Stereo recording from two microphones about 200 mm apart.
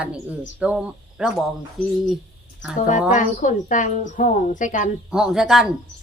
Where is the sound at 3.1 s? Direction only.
40° left (ahead or behind).